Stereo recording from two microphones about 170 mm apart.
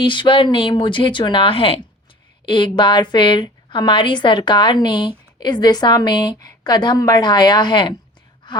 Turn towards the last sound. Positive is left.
turn(degrees=25)  # may be behind; listen again after turning